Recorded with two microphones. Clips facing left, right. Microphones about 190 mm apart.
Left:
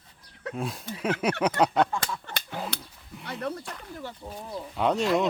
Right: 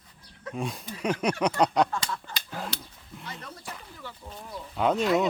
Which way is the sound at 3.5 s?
60° left (ahead or behind).